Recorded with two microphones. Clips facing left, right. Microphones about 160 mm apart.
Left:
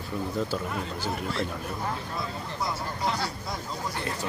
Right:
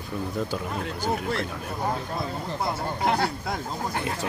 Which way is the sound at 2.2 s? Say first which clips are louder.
Right 3 dB; 55° right (ahead or behind).